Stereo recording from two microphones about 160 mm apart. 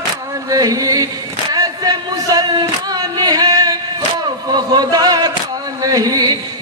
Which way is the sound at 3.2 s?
25° right (ahead or behind).